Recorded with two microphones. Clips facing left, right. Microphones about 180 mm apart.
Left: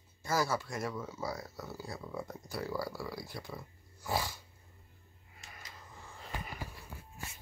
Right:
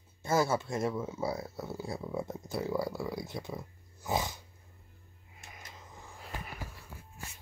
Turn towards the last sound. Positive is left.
turn(degrees=-10)  # may be behind; listen again after turning